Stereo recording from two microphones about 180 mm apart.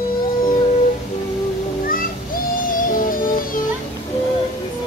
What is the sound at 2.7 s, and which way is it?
Music, 50° left (ahead or behind).